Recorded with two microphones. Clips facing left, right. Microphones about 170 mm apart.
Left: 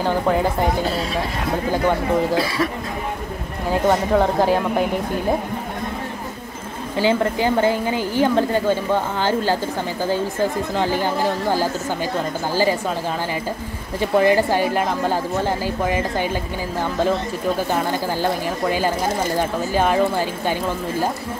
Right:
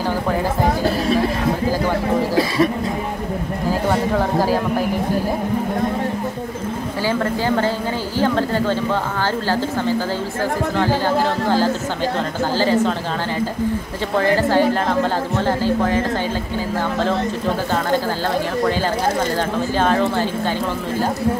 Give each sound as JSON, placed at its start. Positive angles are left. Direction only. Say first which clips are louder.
{"t": 7.0, "sound": "speech", "louder": "left 3 dB", "side_deg": 20}
{"t": 14.1, "sound": "speech", "louder": "even", "side_deg": 15}
{"t": 19.8, "sound": "speech", "louder": "even", "side_deg": 10}